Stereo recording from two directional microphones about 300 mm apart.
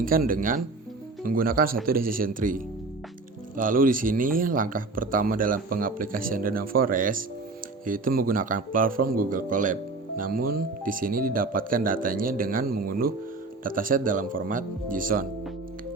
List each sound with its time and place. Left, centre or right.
0.0 s speech: right
3.6 s speech: right